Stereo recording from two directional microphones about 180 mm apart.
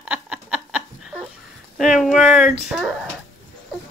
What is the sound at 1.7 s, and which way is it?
Speech, centre (ahead or behind).